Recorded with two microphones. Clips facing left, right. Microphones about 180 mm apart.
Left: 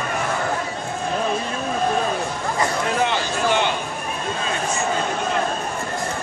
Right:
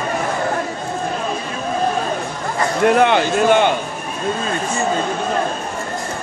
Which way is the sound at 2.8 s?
60° right (ahead or behind).